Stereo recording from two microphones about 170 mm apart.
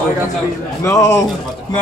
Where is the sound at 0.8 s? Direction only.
20° left (ahead or behind).